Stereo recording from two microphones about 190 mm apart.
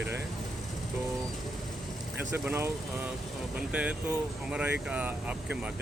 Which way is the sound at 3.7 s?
5° right (ahead or behind).